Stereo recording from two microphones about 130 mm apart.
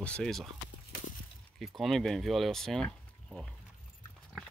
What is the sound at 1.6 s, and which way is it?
Speech, centre (ahead or behind).